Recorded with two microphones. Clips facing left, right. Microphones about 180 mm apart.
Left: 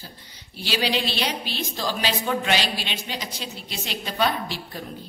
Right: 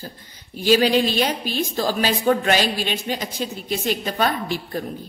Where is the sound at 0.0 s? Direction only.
50° right (ahead or behind).